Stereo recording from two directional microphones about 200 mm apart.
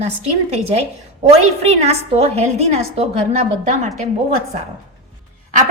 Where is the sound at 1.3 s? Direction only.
35° right (ahead or behind).